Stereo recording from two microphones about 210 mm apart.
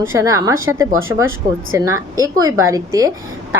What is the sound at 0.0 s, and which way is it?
A woman's voice, 15° right (ahead or behind).